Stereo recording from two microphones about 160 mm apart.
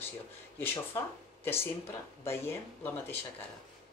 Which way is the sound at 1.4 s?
15° left (ahead or behind).